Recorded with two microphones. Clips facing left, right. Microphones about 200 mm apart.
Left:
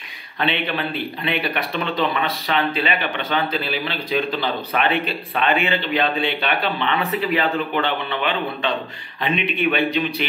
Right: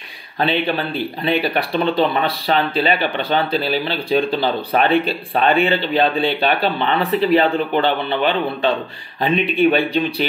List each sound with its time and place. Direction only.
0.4 s speech: 30° right (ahead or behind)